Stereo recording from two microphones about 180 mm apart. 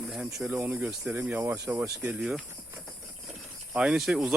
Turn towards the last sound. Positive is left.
turn(degrees=0)  # may be behind; listen again after turning